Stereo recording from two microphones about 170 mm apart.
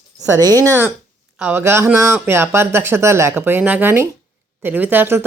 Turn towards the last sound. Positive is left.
turn(degrees=-10)  # may be behind; listen again after turning